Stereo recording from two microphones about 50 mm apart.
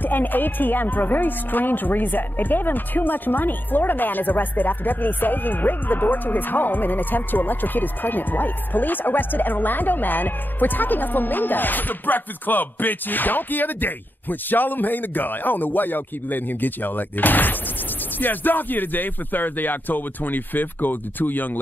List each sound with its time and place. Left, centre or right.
0.0 s speech: left